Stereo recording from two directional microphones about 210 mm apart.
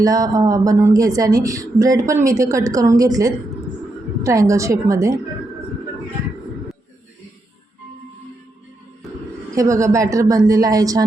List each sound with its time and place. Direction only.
0.0 s speech: 15° right (ahead or behind)
9.6 s speech: 15° right (ahead or behind)